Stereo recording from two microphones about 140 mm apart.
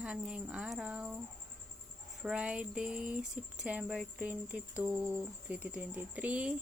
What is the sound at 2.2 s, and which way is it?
Speech, 5° right (ahead or behind).